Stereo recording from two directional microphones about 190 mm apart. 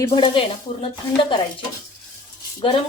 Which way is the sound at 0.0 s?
25° left (ahead or behind).